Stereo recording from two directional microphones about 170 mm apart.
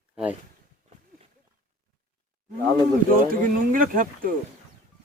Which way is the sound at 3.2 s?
55° right (ahead or behind).